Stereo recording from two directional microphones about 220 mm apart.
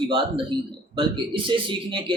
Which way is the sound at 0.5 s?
20° right (ahead or behind).